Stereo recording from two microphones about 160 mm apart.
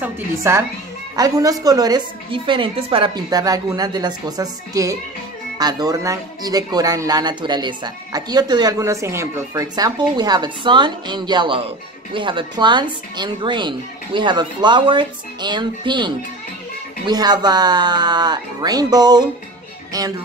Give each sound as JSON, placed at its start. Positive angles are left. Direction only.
{"t": 0.0, "sound": "a woman's voice", "side_deg": -15}